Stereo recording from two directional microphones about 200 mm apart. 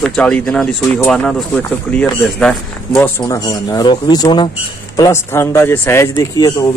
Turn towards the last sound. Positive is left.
turn(degrees=20)  # may be behind; listen again after turning